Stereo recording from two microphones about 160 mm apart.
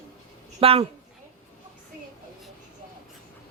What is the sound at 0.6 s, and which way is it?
Speech, 35° right (ahead or behind).